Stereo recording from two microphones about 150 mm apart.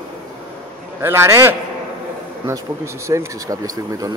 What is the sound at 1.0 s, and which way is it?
A man's voice, 15° right (ahead or behind).